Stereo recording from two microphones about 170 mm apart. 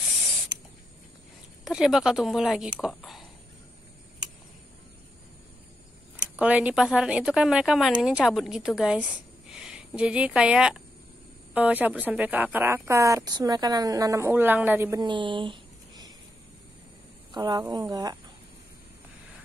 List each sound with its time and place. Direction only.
0.1 s spray: centre (ahead or behind)
1.6 s speech: 5° right (ahead or behind)
6.3 s speech: 5° right (ahead or behind)
15.0 s a sound: 30° right (ahead or behind)
17.3 s speech: 25° right (ahead or behind)